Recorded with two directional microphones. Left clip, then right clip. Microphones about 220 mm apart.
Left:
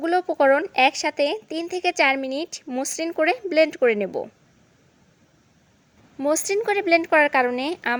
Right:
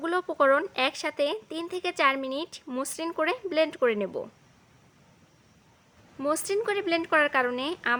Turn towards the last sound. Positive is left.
turn(degrees=15)  # may be behind; listen again after turning